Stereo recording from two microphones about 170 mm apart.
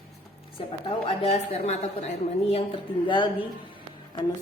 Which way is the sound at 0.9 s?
35° left (ahead or behind).